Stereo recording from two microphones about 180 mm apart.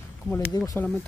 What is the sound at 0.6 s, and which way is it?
Speech, 20° left (ahead or behind).